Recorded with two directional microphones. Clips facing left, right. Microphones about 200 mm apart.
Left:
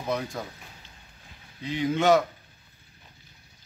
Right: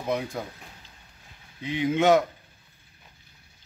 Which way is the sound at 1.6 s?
20° right (ahead or behind).